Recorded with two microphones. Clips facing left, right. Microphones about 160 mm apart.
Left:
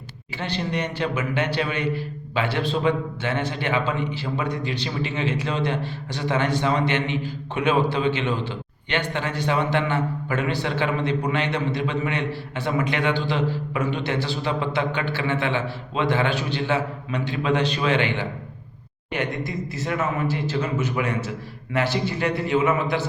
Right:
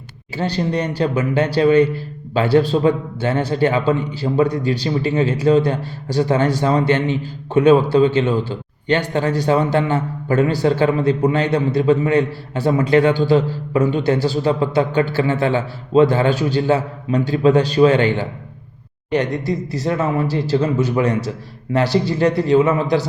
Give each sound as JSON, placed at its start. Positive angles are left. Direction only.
{"t": 0.3, "sound": "a man's voice", "side_deg": -40}